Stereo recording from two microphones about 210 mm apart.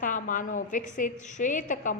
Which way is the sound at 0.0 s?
40° left (ahead or behind).